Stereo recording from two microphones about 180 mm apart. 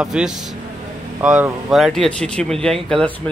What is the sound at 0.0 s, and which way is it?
Speech, 5° right (ahead or behind).